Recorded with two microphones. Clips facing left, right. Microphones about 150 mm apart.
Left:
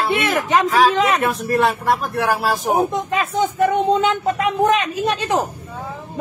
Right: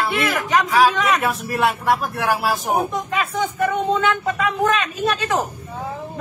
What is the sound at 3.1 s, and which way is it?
A man's voice, 20° left (ahead or behind).